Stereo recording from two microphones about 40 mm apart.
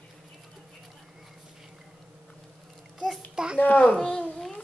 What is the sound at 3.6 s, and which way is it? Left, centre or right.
Speech, left.